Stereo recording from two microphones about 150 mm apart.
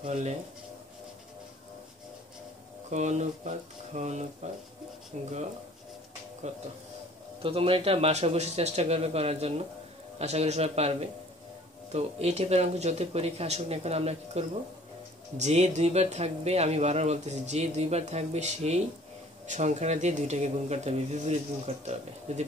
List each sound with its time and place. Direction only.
0.1 s speech: 50° right (ahead or behind)
2.9 s speech: 50° right (ahead or behind)
6.4 s speech: 50° right (ahead or behind)
7.4 s speech: 35° right (ahead or behind)